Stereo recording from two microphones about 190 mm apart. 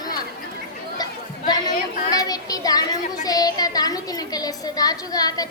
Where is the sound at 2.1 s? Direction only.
20° left (ahead or behind).